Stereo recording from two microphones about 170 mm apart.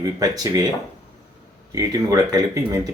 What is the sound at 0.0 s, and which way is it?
Speech, 20° right (ahead or behind).